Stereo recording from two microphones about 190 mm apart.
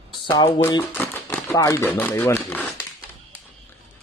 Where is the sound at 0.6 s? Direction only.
15° left (ahead or behind).